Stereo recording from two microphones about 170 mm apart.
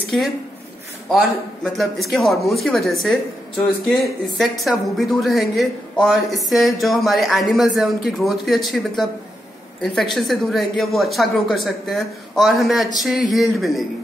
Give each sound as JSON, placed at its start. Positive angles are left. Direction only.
{"t": 1.1, "sound": "a woman's voice", "side_deg": 0}